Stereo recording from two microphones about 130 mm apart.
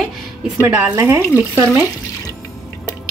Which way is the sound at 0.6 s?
15° right (ahead or behind).